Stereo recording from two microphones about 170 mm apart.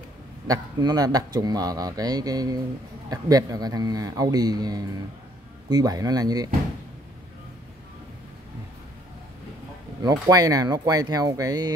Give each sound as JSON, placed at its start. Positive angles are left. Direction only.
{"t": 0.5, "sound": "speech", "side_deg": -20}
{"t": 10.0, "sound": "speech", "side_deg": -20}